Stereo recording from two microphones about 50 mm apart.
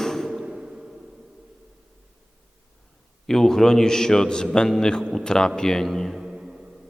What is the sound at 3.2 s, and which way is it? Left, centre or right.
A man's voice, centre.